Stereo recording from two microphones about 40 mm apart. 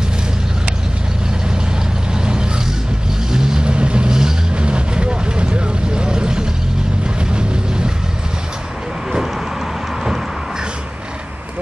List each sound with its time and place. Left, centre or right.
3.3 s vehicle: centre